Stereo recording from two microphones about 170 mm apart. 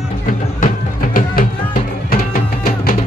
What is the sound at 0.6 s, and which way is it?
Music, 55° left (ahead or behind).